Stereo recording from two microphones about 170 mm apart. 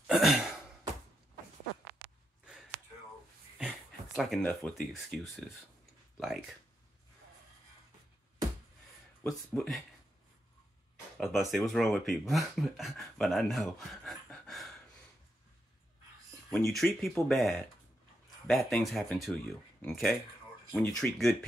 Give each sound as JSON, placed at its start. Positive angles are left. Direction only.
{"t": 0.0, "sound": "sigh", "side_deg": 0}
{"t": 2.0, "sound": "a sound", "side_deg": -5}
{"t": 4.4, "sound": "speech", "side_deg": 5}
{"t": 9.5, "sound": "speech", "side_deg": 0}
{"t": 11.1, "sound": "speech", "side_deg": 0}
{"t": 16.4, "sound": "speech", "side_deg": 0}